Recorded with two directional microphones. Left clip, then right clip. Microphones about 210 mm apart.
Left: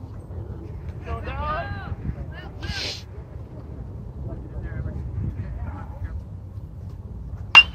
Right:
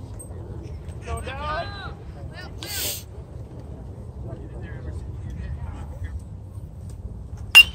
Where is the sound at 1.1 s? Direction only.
35° left (ahead or behind).